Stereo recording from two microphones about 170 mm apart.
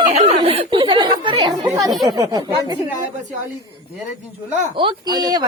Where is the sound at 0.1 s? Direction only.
40° right (ahead or behind); by 1.9 s 20° right (ahead or behind).